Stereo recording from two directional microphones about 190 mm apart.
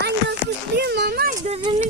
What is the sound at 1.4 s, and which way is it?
Speech, 30° right (ahead or behind).